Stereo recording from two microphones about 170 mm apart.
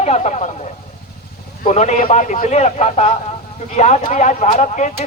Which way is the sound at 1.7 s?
40° left (ahead or behind).